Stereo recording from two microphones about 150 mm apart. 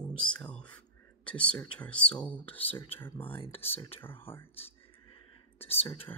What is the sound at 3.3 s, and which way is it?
Speech, 40° left (ahead or behind).